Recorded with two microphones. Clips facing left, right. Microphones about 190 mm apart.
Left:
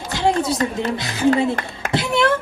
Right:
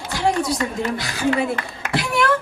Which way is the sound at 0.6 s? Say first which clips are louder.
Left 2 dB; 30° left (ahead or behind).